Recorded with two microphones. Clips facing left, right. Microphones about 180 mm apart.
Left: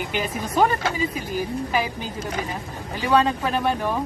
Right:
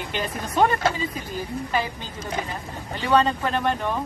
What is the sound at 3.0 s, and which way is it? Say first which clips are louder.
Speech: left 1 dB; 10° left (ahead or behind).